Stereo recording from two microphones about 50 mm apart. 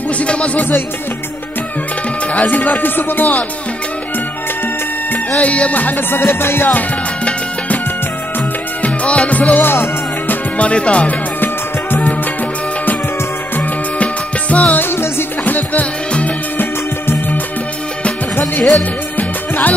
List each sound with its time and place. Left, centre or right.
0.2 s speech: left
2.3 s music: left
5.4 s music: left
7.2 s music: left
8.8 s music: left
9.6 s music: left
10.6 s speech: left
11.4 s music: left
14.5 s music: left
14.8 s music: left
15.4 s music: left
18.4 s music: centre
18.8 s music: left